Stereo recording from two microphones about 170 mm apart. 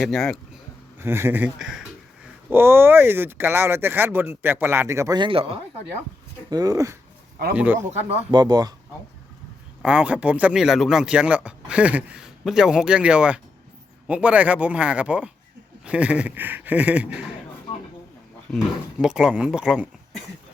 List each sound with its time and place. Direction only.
0.0 s speech: centre (ahead or behind)
0.9 s speech: 15° right (ahead or behind); by 5.5 s 35° right (ahead or behind)
6.5 s speech: 20° right (ahead or behind)
7.5 s speech: 10° right (ahead or behind)
7.8 s speech: 40° right (ahead or behind)
8.3 s speech: 25° right (ahead or behind)
9.8 s speech: 5° right (ahead or behind)
18.5 s speech: centre (ahead or behind)